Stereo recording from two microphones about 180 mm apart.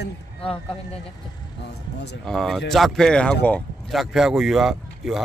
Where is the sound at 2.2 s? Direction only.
Centre (ahead or behind).